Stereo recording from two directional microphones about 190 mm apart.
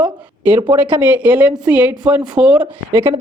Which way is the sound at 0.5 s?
25° right (ahead or behind).